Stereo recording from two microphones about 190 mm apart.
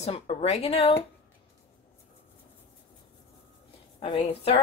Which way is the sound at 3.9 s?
30° left (ahead or behind).